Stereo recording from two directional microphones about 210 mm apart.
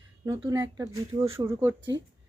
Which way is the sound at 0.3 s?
15° right (ahead or behind).